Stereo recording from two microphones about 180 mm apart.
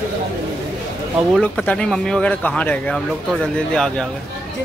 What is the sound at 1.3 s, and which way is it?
Speech, 5° left (ahead or behind).